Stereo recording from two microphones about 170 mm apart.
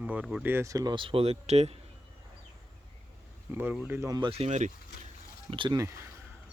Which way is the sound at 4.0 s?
25° right (ahead or behind).